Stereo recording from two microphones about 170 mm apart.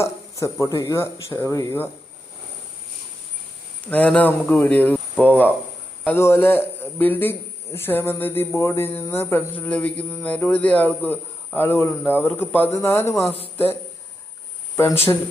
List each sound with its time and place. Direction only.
0.0 s a man's voice: 15° left (ahead or behind)
3.8 s a man's voice: 10° left (ahead or behind)
14.8 s a man's voice: 15° left (ahead or behind)